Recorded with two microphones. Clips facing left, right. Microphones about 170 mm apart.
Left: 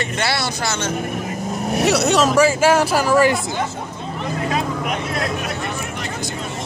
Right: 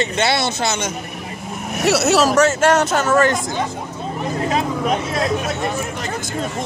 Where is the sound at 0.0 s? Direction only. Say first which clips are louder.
Right 4 dB; 20° right (ahead or behind).